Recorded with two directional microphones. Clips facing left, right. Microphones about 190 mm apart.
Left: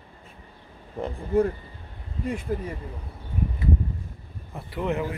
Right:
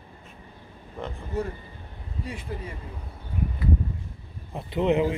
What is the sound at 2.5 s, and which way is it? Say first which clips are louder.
Speech: left 8 dB; 45° left (ahead or behind).